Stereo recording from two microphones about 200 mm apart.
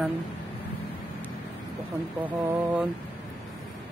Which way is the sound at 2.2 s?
10° right (ahead or behind).